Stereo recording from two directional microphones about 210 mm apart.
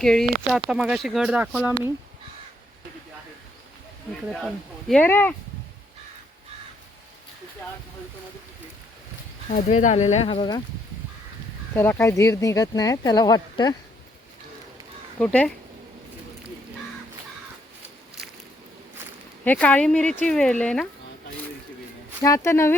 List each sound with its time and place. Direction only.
0.0 s speech: 5° left (ahead or behind)
4.3 s speech: centre (ahead or behind)
9.5 s speech: 35° left (ahead or behind)
11.7 s speech: 10° left (ahead or behind)
15.2 s speech: 5° left (ahead or behind)
19.5 s speech: 5° left (ahead or behind)
22.2 s speech: 15° left (ahead or behind)